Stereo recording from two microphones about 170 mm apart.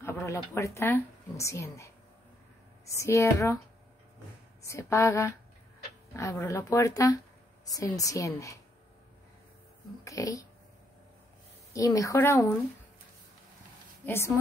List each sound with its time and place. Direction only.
0.0 s speech: 15° left (ahead or behind)
2.9 s speech: 15° left (ahead or behind)
4.6 s speech: 15° left (ahead or behind)
6.4 s speech: 15° left (ahead or behind)
10.0 s speech: 20° left (ahead or behind)
11.7 s speech: 20° left (ahead or behind)
14.0 s speech: 15° left (ahead or behind)